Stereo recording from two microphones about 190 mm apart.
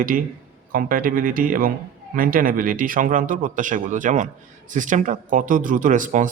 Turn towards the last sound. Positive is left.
turn(degrees=-40)  # may be behind; listen again after turning